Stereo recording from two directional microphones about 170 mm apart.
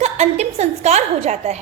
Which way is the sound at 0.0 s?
40° right (ahead or behind).